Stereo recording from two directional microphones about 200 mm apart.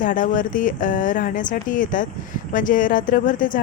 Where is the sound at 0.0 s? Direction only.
40° left (ahead or behind).